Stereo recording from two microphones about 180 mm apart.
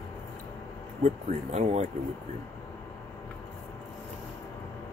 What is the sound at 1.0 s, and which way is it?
Speech, 40° right (ahead or behind).